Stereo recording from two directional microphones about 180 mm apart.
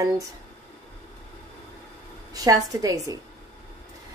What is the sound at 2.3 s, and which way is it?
Speech, 20° right (ahead or behind).